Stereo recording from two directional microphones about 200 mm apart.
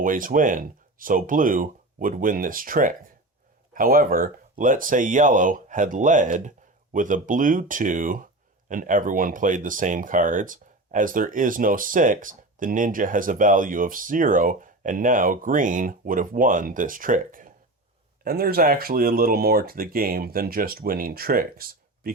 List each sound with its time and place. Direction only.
0.0 s speech: 40° right (ahead or behind)